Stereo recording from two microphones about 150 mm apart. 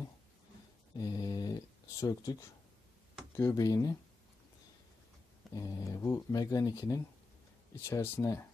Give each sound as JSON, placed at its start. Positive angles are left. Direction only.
{"t": 0.9, "sound": "speech", "side_deg": 25}
{"t": 3.3, "sound": "speech", "side_deg": 25}
{"t": 5.5, "sound": "speech", "side_deg": 20}